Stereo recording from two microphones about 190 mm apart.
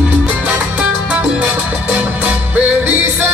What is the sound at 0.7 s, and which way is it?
Salsa music, 5° right (ahead or behind).